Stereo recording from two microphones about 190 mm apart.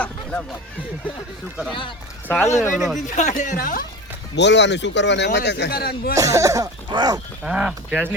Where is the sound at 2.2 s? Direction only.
10° left (ahead or behind).